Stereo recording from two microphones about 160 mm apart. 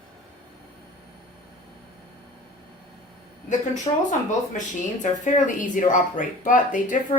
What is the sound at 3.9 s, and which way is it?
Speech, 35° left (ahead or behind).